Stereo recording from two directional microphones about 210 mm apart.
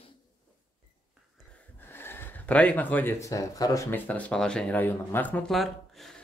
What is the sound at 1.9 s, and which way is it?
Speech, 10° left (ahead or behind).